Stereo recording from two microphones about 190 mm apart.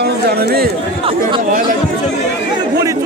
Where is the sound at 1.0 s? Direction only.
30° right (ahead or behind).